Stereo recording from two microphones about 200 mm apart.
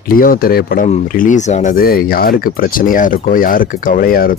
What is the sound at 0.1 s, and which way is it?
Speech, 45° left (ahead or behind).